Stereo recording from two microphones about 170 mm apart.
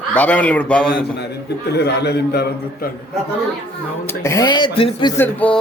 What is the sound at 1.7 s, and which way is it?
A man's voice, 75° left (ahead or behind).